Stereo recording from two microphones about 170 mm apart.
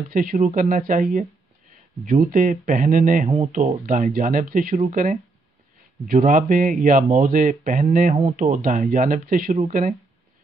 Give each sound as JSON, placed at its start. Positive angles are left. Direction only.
{"t": 0.1, "sound": "speech", "side_deg": -50}